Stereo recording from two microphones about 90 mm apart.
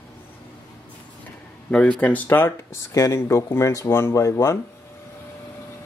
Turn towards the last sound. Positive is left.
turn(degrees=35)  # may be behind; listen again after turning